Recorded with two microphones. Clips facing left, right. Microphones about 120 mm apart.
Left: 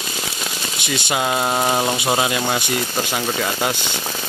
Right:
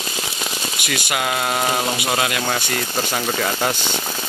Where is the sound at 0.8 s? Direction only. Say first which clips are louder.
Left 2 dB; 25° left (ahead or behind).